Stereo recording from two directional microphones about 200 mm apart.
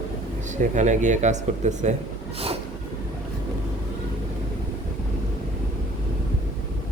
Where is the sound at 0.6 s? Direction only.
40° right (ahead or behind).